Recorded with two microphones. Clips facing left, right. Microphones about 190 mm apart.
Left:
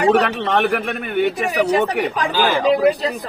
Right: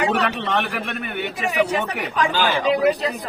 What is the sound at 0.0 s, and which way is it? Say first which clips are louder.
Speech: left 6 dB; 45° left (ahead or behind).